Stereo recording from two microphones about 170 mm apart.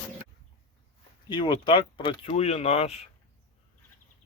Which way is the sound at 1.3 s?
30° left (ahead or behind).